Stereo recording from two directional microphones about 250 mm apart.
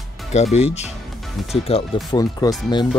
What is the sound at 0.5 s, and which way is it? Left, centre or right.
Speech, left.